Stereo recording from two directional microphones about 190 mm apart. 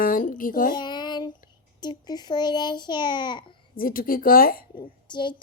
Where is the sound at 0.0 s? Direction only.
45° left (ahead or behind).